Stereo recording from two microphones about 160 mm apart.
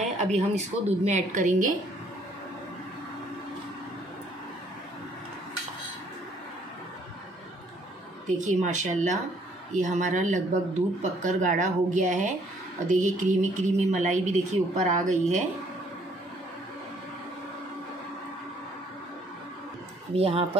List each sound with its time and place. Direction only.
0.2 s speech: 45° right (ahead or behind)
8.4 s speech: 45° right (ahead or behind)
20.2 s speech: 40° right (ahead or behind)